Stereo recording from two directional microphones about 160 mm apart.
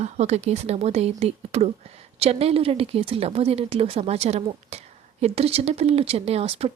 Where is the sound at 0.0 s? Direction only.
45° right (ahead or behind).